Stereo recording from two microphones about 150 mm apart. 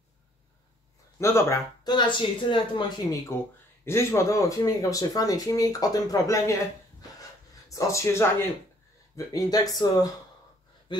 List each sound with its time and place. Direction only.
1.2 s speech: 20° left (ahead or behind)
1.9 s speech: 30° left (ahead or behind)
3.8 s speech: 20° left (ahead or behind)